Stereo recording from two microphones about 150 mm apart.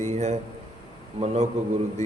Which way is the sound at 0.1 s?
50° right (ahead or behind).